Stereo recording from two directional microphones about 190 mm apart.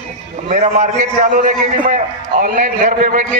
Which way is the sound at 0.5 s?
40° right (ahead or behind).